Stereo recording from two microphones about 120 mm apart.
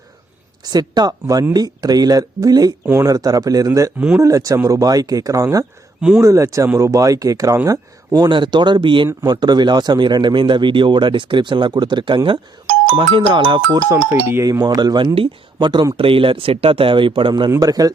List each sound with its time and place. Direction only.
0.6 s a man's voice: 35° right (ahead or behind)
13.9 s a man's voice: 20° right (ahead or behind)
16.0 s speech: 50° right (ahead or behind)
17.5 s speech: 30° right (ahead or behind)